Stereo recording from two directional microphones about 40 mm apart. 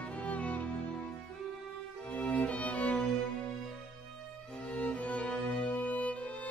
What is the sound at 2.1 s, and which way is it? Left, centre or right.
Music, left.